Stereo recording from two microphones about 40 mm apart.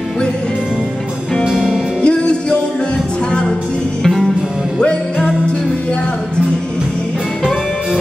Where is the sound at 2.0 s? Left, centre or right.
Left.